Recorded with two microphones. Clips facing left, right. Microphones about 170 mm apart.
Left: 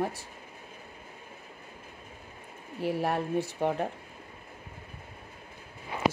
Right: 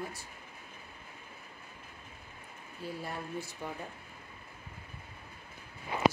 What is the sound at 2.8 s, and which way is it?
Speech, 90° left.